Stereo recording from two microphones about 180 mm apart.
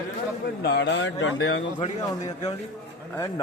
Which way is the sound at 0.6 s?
70° left (ahead or behind).